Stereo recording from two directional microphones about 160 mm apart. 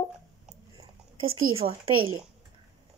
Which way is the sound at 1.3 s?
35° right (ahead or behind).